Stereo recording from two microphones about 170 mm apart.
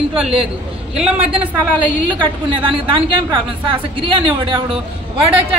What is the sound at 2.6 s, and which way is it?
A woman's voice, 30° right (ahead or behind).